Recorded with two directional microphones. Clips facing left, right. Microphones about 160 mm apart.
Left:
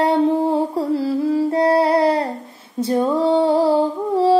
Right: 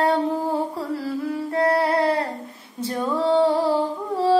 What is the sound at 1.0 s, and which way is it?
Humming, 20° left (ahead or behind).